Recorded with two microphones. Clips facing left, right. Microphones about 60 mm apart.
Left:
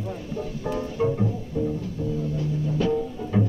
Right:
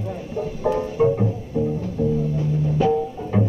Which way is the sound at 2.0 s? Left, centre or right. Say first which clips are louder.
Right 9 dB; right.